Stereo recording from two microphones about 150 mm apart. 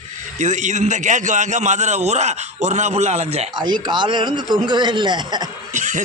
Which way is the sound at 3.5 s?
30° right (ahead or behind).